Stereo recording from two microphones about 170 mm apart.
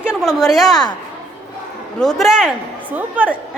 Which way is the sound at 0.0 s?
Centre (ahead or behind).